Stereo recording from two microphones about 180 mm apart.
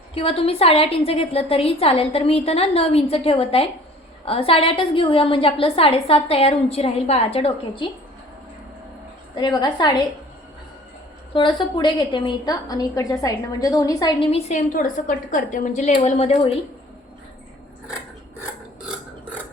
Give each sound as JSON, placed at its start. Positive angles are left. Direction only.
{"t": 0.1, "sound": "a woman's voice", "side_deg": 30}
{"t": 9.3, "sound": "a woman's voice", "side_deg": 25}
{"t": 11.3, "sound": "a woman's voice", "side_deg": 25}